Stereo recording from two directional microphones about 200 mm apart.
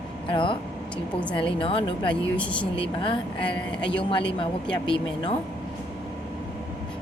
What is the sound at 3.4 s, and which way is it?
Speech, 5° left (ahead or behind).